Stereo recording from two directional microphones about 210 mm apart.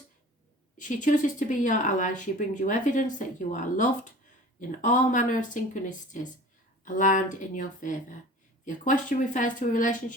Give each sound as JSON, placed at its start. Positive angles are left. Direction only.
{"t": 0.8, "sound": "speech", "side_deg": 35}